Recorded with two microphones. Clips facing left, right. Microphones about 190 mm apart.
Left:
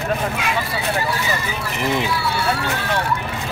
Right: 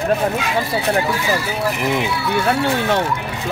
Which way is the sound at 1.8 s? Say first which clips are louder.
Right 1 dB; 15° right (ahead or behind).